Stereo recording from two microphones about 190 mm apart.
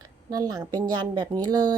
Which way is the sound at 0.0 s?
20° right (ahead or behind).